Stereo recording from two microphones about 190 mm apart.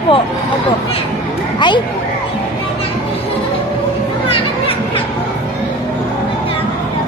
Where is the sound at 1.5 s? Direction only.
25° left (ahead or behind).